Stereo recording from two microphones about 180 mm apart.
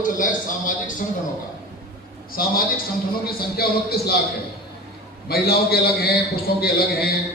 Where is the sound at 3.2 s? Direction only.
60° left (ahead or behind).